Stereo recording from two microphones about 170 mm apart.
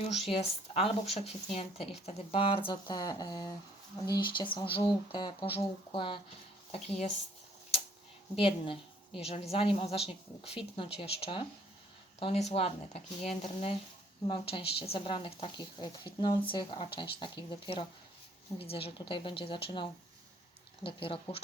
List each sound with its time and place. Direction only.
0.1 s speech: 35° left (ahead or behind)
8.4 s speech: 30° left (ahead or behind)